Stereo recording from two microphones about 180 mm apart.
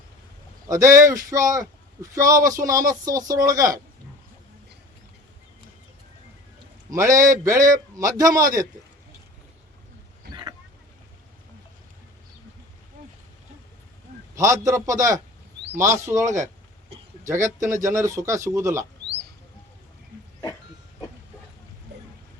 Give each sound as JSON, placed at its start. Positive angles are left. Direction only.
{"t": 0.7, "sound": "speech", "side_deg": -15}
{"t": 6.9, "sound": "speech", "side_deg": -15}
{"t": 14.3, "sound": "speech", "side_deg": -15}